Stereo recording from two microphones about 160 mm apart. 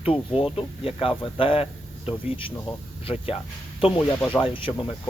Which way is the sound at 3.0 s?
35° left (ahead or behind).